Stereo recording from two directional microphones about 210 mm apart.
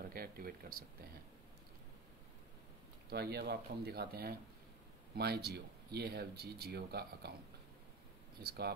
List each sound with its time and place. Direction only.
0.1 s a sound: 45° right (ahead or behind)
3.1 s speech: 50° right (ahead or behind)
8.5 s speech: 50° right (ahead or behind)